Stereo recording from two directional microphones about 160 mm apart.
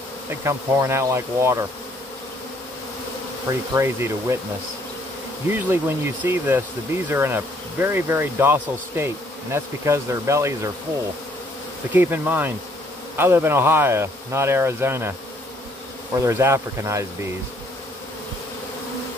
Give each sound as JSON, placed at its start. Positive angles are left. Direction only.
{"t": 0.3, "sound": "speech", "side_deg": -20}
{"t": 3.4, "sound": "speech", "side_deg": -15}
{"t": 5.5, "sound": "speech", "side_deg": -15}
{"t": 11.9, "sound": "speech", "side_deg": -10}
{"t": 16.2, "sound": "speech", "side_deg": -15}